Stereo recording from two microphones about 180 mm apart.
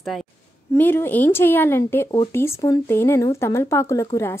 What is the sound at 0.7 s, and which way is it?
A woman's voice, 10° left (ahead or behind).